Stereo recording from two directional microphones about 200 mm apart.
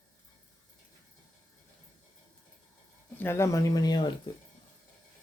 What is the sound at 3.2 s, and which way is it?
Speech, 10° left (ahead or behind).